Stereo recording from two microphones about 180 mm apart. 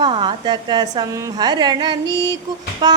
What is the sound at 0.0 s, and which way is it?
Female singing, 25° right (ahead or behind).